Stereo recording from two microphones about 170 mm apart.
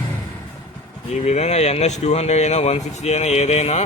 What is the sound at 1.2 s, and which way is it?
Speech, 40° left (ahead or behind).